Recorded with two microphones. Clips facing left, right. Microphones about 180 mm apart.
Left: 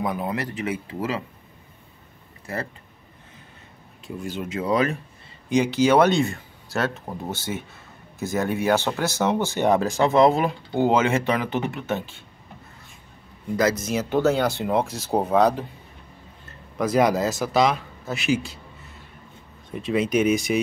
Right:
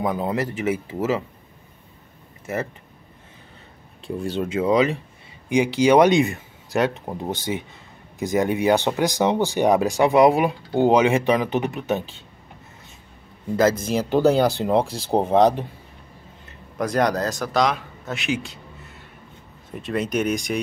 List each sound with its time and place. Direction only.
0.0 s speech: 25° right (ahead or behind)
2.4 s speech: 20° right (ahead or behind)
4.2 s speech: 30° right (ahead or behind)
13.7 s speech: 30° right (ahead or behind)
16.7 s a man's voice: 5° left (ahead or behind)
19.7 s a man's voice: centre (ahead or behind)